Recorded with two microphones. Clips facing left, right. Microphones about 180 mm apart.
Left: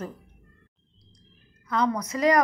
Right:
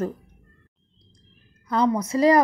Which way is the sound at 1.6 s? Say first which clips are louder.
Right 4 dB; 30° right (ahead or behind).